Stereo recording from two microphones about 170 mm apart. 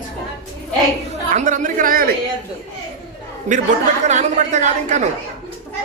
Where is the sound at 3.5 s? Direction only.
45° right (ahead or behind).